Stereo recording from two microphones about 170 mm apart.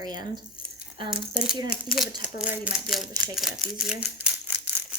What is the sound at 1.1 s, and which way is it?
Speech, 5° right (ahead or behind).